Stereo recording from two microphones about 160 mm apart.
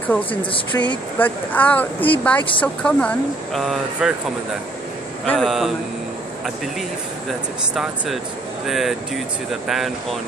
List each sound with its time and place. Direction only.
0.3 s speech: 30° left (ahead or behind)
1.1 s speech: 10° left (ahead or behind)
5.2 s speech: 5° left (ahead or behind)
7.7 s speech: centre (ahead or behind)